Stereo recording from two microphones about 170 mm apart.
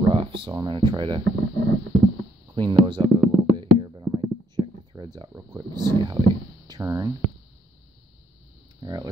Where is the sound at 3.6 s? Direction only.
25° right (ahead or behind).